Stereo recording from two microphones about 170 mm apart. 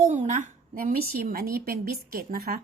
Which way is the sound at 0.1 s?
45° right (ahead or behind).